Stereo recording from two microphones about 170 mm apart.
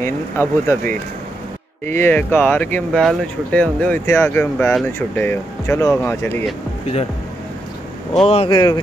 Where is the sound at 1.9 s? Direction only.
15° left (ahead or behind).